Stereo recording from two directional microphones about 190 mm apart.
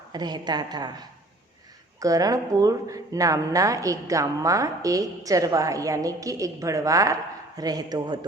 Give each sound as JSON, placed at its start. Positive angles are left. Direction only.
{"t": 0.1, "sound": "a woman's voice", "side_deg": -20}